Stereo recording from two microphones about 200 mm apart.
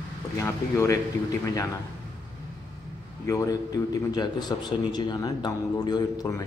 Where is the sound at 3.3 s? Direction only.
15° left (ahead or behind).